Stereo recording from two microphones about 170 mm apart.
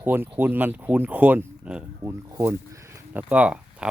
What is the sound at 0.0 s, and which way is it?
Speech, 10° right (ahead or behind).